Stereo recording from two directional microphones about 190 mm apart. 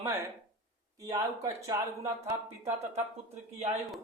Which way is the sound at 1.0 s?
15° right (ahead or behind).